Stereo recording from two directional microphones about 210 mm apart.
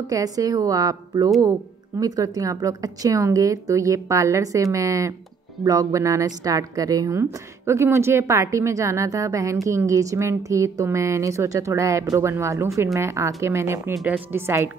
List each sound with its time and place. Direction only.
0.0 s a woman's voice: 15° right (ahead or behind)